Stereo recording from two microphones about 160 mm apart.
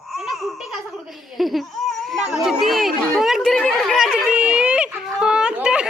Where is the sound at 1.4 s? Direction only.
Centre (ahead or behind).